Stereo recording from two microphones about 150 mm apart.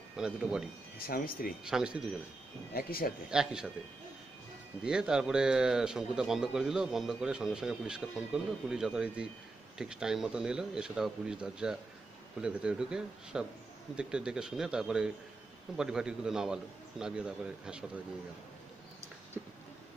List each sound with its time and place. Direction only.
0.2 s speech: 5° right (ahead or behind)
0.9 s speech: 80° left
1.6 s speech: 5° right (ahead or behind)
2.7 s speech: 80° left
3.3 s speech: 5° right (ahead or behind)
4.8 s speech: 5° right (ahead or behind)
19.4 s a sound: 5° right (ahead or behind)